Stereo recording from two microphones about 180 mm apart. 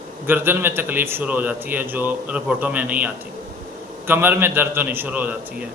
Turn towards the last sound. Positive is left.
turn(degrees=-10)  # may be behind; listen again after turning